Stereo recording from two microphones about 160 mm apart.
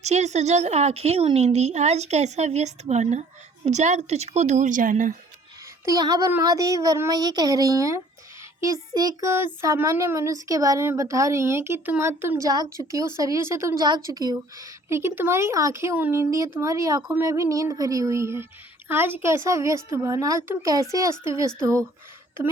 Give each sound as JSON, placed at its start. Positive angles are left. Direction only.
{"t": 0.0, "sound": "a woman's voice", "side_deg": -45}
{"t": 5.8, "sound": "child singing", "side_deg": -20}